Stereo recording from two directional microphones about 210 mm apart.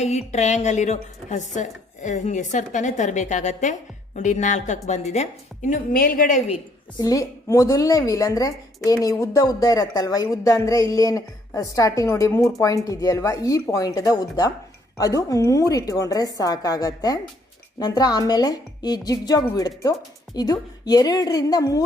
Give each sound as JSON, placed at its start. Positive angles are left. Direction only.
{"t": 0.0, "sound": "speech", "side_deg": 30}
{"t": 7.0, "sound": "a woman's voice", "side_deg": 15}